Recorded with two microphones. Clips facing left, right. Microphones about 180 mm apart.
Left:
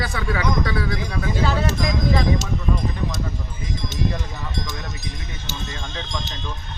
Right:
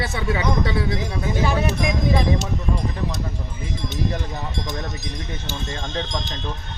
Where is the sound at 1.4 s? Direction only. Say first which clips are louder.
Right 1 dB; 15° right (ahead or behind).